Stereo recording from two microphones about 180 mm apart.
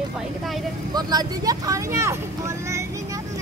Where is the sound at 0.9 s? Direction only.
20° right (ahead or behind).